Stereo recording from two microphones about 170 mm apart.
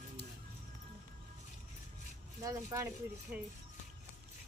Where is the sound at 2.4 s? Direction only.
15° right (ahead or behind).